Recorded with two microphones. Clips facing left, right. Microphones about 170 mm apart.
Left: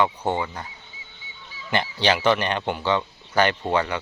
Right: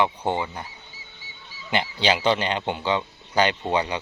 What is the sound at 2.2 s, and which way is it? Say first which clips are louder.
Speech: left 1 dB; 15° right (ahead or behind).